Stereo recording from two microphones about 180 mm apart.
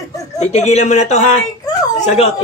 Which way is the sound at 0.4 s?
40° left (ahead or behind).